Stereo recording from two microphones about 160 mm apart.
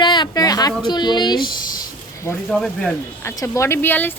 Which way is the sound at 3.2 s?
15° left (ahead or behind).